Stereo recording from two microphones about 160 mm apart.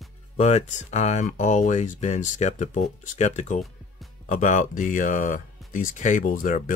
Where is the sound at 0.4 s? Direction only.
40° left (ahead or behind).